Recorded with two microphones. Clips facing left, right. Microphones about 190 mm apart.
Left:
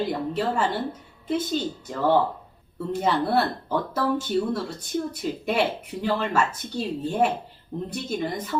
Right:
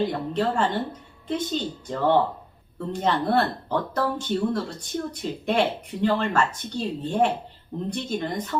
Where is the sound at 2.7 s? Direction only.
5° left (ahead or behind).